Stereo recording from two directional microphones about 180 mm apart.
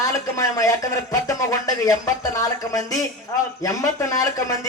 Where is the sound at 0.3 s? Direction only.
20° left (ahead or behind).